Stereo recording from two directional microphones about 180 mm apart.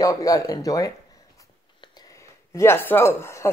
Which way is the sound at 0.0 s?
20° left (ahead or behind).